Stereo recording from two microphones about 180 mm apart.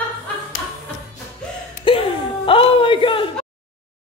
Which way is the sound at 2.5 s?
30° left (ahead or behind).